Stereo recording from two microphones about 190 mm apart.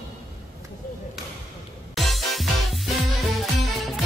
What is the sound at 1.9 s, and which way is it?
Music, centre (ahead or behind).